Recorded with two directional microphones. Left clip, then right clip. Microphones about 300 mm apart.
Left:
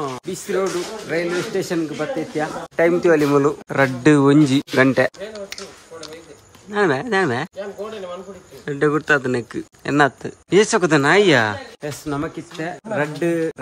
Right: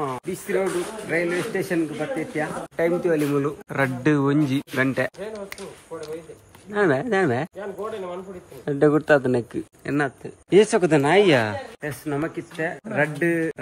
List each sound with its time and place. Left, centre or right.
0.0 s speech: centre
2.7 s speech: left
3.6 s speech: centre
8.6 s speech: centre